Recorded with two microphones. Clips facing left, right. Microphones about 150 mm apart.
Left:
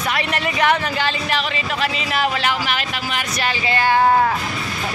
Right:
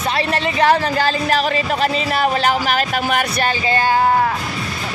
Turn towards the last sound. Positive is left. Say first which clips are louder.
# right 6 dB
turn(degrees=-50)  # may be behind; listen again after turning